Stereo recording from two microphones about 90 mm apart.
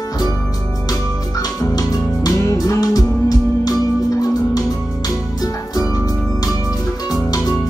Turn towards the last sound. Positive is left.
turn(degrees=40)  # may be behind; listen again after turning